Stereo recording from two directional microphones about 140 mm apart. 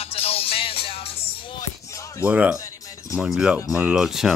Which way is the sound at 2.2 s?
10° right (ahead or behind).